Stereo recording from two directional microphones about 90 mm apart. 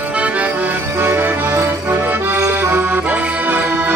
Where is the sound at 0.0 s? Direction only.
15° right (ahead or behind).